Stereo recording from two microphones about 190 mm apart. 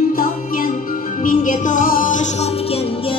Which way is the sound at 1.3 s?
40° left (ahead or behind).